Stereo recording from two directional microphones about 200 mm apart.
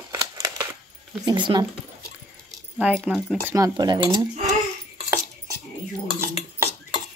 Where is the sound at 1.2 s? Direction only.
25° right (ahead or behind).